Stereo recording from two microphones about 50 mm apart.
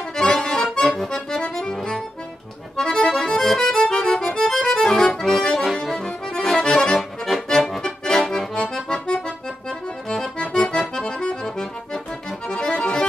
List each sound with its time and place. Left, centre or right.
0.1 s accordion: centre